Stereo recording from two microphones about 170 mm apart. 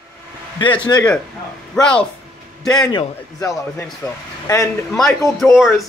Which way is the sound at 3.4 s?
15° left (ahead or behind).